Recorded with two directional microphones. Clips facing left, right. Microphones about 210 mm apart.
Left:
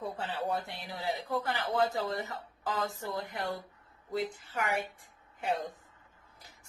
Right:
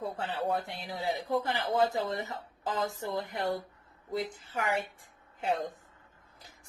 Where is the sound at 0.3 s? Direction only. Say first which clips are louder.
Right 3 dB; 20° right (ahead or behind).